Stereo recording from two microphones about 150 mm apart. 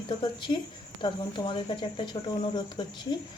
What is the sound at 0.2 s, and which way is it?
Speech, 30° left (ahead or behind).